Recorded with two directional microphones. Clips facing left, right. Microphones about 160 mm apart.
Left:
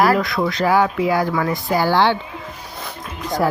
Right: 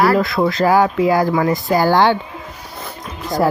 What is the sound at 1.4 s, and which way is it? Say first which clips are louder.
Music: right 4 dB; 45° right (ahead or behind).